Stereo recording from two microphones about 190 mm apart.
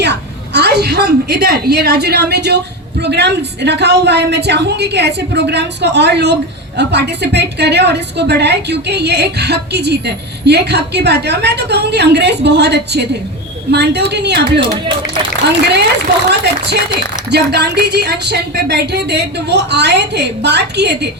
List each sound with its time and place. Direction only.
0.0 s a woman's voice: 60° right (ahead or behind)
17.3 s speech: 60° right (ahead or behind)